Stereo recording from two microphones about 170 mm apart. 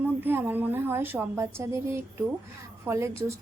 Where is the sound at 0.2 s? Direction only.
10° right (ahead or behind).